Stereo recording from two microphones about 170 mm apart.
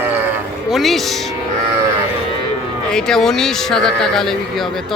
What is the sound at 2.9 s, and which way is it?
Speech, 5° left (ahead or behind).